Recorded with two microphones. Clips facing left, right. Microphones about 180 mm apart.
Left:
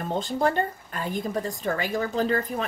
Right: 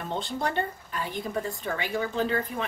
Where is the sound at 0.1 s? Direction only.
45° left (ahead or behind).